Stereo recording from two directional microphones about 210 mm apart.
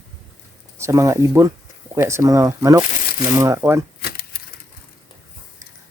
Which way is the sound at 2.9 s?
40° left (ahead or behind).